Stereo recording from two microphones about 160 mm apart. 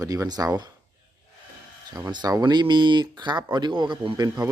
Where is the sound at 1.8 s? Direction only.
25° right (ahead or behind).